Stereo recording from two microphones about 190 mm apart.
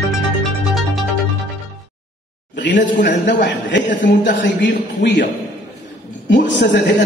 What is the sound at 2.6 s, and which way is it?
A man's voice, 65° left (ahead or behind).